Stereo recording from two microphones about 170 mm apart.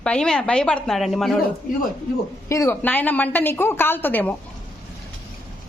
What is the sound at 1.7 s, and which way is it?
Speech, 55° left (ahead or behind).